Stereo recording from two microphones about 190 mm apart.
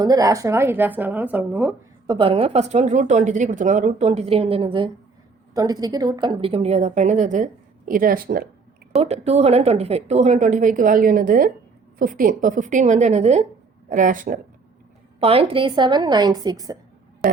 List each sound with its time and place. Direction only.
0.0 s speech: 20° right (ahead or behind)
2.0 s a woman's voice: 25° right (ahead or behind); by 8.4 s 50° right (ahead or behind)
9.0 s a woman's voice: 35° right (ahead or behind)
15.2 s a woman's voice: 30° right (ahead or behind)